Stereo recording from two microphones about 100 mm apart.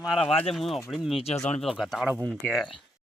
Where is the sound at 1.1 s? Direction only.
90° left.